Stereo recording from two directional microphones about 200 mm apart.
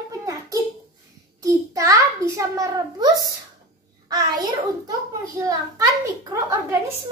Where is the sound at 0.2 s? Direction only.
15° right (ahead or behind).